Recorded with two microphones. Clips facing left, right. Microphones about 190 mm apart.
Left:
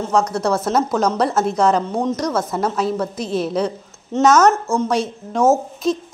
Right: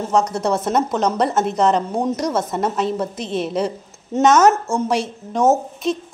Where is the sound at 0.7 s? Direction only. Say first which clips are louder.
Left 1 dB; centre (ahead or behind).